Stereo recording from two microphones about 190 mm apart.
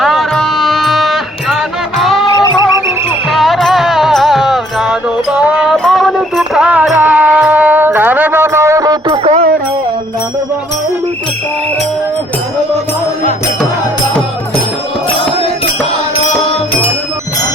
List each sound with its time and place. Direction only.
0.0 s music: centre (ahead or behind)
2.3 s music: 20° left (ahead or behind)
3.2 s music: centre (ahead or behind); by 9.3 s 25° right (ahead or behind)